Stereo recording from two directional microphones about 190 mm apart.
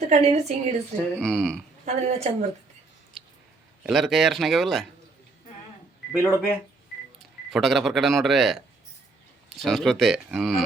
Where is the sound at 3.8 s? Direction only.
Centre (ahead or behind).